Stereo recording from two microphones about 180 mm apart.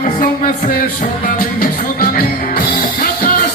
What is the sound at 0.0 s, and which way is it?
Music, 45° left (ahead or behind).